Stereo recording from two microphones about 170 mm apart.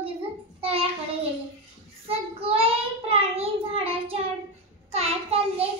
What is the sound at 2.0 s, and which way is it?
Child singing, 35° right (ahead or behind).